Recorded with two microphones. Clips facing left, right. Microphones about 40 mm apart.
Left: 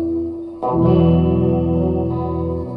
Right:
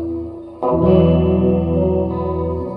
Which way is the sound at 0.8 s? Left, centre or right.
Centre.